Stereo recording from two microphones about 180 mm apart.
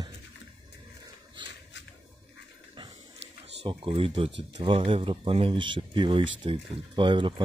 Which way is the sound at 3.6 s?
30° right (ahead or behind).